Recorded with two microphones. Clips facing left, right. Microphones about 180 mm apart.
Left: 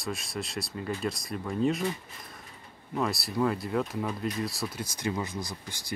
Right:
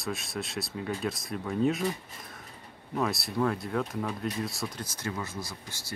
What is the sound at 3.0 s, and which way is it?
Speech, centre (ahead or behind).